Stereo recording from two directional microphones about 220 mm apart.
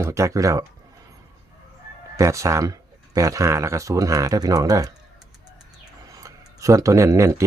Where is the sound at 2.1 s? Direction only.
15° right (ahead or behind).